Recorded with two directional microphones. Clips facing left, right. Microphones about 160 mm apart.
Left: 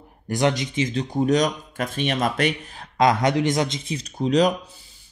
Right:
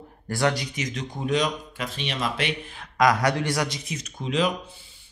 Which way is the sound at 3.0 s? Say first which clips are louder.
Left 2 dB; 25° left (ahead or behind).